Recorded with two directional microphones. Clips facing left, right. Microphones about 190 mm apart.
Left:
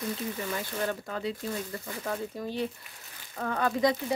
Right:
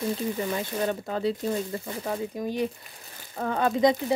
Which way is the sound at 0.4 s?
20° right (ahead or behind).